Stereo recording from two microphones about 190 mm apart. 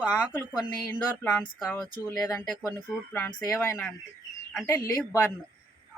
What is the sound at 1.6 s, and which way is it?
Speech, 20° left (ahead or behind).